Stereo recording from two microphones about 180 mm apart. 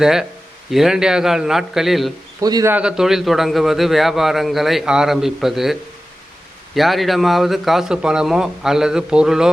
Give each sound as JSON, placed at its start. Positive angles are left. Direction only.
{"t": 0.0, "sound": "a man's voice", "side_deg": -5}
{"t": 2.4, "sound": "speech", "side_deg": -20}
{"t": 2.7, "sound": "a man's voice", "side_deg": -5}
{"t": 6.7, "sound": "a man's voice", "side_deg": 0}